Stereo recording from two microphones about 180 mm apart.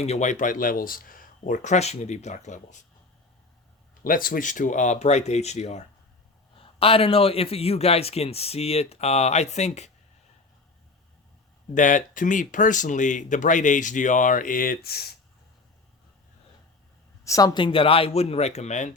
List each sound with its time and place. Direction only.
0.0 s speech: 40° left (ahead or behind)
4.0 s speech: 50° left (ahead or behind)
11.7 s speech: 45° left (ahead or behind)
17.2 s speech: 20° left (ahead or behind); by 18.9 s 40° left (ahead or behind)